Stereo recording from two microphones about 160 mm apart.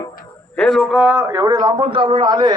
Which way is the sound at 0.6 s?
5° left (ahead or behind).